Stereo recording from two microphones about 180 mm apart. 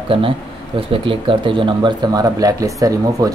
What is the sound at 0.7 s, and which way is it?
Speech, 30° right (ahead or behind).